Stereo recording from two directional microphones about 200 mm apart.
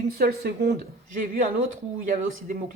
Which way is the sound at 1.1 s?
45° right (ahead or behind).